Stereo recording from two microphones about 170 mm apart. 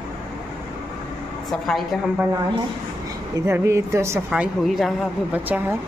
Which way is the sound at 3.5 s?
15° right (ahead or behind).